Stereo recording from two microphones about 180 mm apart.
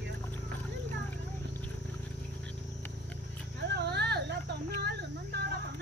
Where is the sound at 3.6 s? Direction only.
65° right (ahead or behind).